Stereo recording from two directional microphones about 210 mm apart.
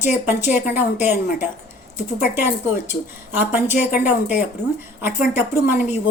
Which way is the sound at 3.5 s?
10° right (ahead or behind).